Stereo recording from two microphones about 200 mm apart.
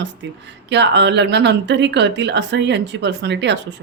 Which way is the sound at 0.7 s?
60° right (ahead or behind).